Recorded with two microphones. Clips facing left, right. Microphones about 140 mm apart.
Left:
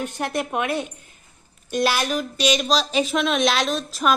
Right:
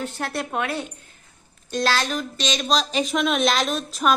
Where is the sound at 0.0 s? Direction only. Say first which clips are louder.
Left 2 dB; 15° left (ahead or behind).